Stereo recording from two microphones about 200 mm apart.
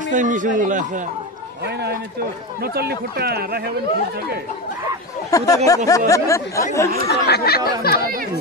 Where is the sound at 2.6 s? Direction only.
50° right (ahead or behind).